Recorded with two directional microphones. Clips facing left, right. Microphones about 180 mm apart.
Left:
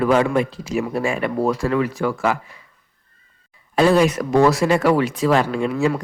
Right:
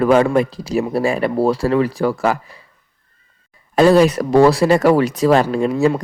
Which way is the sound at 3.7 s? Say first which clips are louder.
Right 4 dB; 40° right (ahead or behind).